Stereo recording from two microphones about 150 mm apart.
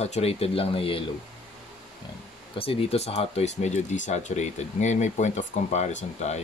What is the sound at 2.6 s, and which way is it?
Speech, 40° left (ahead or behind).